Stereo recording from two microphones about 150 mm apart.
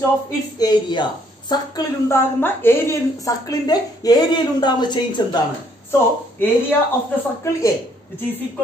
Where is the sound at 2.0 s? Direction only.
15° left (ahead or behind).